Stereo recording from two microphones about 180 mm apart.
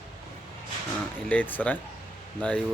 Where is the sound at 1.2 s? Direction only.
10° left (ahead or behind).